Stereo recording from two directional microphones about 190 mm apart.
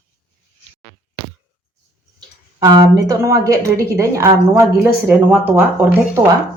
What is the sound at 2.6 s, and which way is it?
Speech, 20° right (ahead or behind).